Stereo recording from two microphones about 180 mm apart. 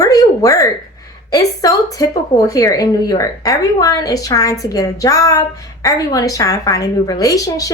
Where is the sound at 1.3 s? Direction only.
20° left (ahead or behind).